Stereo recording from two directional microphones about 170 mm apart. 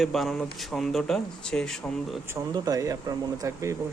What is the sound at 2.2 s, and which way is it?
Speech, 20° right (ahead or behind).